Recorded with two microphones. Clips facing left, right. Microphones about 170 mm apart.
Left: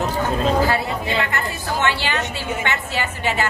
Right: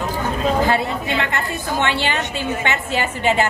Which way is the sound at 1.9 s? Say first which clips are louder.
Right 2 dB; 20° right (ahead or behind).